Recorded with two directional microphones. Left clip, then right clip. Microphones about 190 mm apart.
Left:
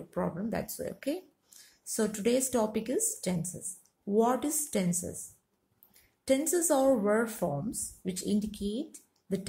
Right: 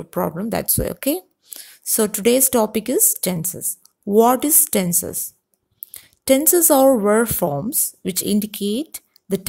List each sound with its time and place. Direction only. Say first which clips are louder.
0.1 s speech: right 11 dB; 55° right (ahead or behind)
6.2 s a woman's voice: right 12 dB; 55° right (ahead or behind)